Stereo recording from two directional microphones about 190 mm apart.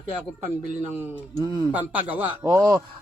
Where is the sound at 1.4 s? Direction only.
20° right (ahead or behind).